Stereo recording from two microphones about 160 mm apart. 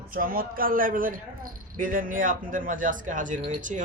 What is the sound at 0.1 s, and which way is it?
Speech, 65° right (ahead or behind).